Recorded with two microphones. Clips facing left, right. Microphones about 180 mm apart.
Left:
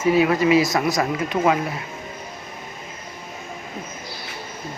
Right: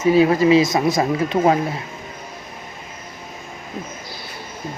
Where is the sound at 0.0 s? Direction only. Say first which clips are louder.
Right 3 dB; 30° right (ahead or behind).